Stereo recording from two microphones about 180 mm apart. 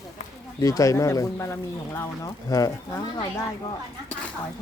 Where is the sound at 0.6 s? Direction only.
20° left (ahead or behind).